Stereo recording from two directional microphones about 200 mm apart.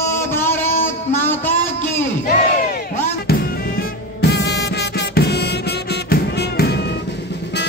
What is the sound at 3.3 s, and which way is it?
Music, 50° left (ahead or behind).